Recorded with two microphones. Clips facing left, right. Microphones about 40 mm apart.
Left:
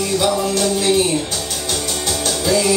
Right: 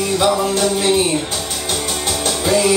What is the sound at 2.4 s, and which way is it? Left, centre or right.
Music, right.